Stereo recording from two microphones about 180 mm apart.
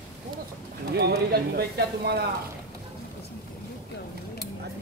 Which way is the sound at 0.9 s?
60° right (ahead or behind).